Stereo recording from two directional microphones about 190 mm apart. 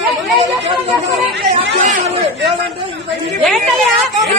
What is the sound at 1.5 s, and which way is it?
Speech, 40° right (ahead or behind).